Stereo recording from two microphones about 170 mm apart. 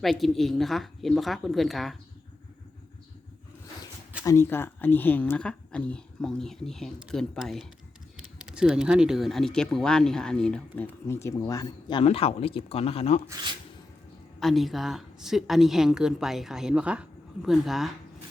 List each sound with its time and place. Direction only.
0.0 s a woman's voice: centre (ahead or behind)
4.2 s a woman's voice: 15° left (ahead or behind)
11.1 s speech: 15° left (ahead or behind)
12.0 s speech: 35° left (ahead or behind)
14.3 s a woman's voice: centre (ahead or behind)